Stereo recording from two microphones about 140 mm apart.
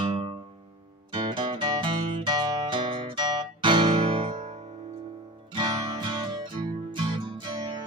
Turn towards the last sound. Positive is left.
turn(degrees=-35)  # may be behind; listen again after turning